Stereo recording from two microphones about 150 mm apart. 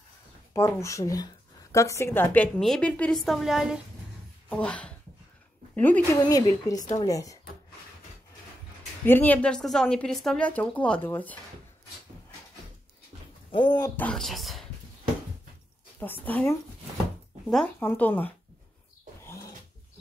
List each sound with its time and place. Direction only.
0.5 s speech: 20° left (ahead or behind); by 3.8 s 5° right (ahead or behind)
4.5 s speech: 10° left (ahead or behind)
6.1 s a woman's voice: 25° left (ahead or behind)
9.0 s speech: 15° left (ahead or behind)
13.5 s a woman's voice: 30° left (ahead or behind)
13.9 s speech: 5° left (ahead or behind)
16.0 s speech: 10° left (ahead or behind)
19.2 s dog: 20° left (ahead or behind)